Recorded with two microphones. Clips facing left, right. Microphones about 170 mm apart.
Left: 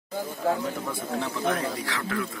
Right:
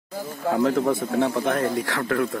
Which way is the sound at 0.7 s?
70° right (ahead or behind).